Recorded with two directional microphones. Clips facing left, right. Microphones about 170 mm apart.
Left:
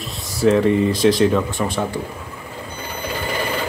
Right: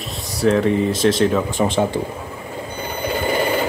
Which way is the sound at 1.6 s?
20° right (ahead or behind).